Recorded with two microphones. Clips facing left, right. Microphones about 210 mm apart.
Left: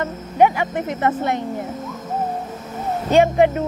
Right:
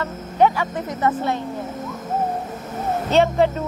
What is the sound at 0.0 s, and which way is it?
Speech, 20° left (ahead or behind).